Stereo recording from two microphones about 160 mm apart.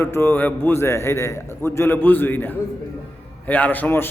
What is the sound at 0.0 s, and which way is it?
A man's voice, 15° left (ahead or behind).